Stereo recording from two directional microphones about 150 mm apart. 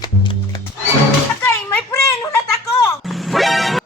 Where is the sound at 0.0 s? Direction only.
30° left (ahead or behind).